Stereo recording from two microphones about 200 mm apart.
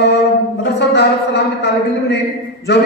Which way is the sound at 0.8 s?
60° left (ahead or behind).